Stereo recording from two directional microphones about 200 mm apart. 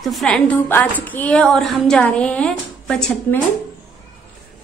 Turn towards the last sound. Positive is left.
turn(degrees=5)  # may be behind; listen again after turning